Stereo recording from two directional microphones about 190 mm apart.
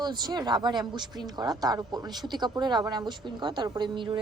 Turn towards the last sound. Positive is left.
turn(degrees=-25)  # may be behind; listen again after turning